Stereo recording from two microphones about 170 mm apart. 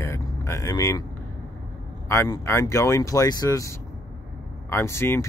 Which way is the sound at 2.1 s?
15° left (ahead or behind).